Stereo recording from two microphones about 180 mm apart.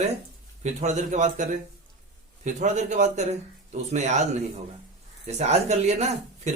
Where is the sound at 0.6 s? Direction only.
40° right (ahead or behind).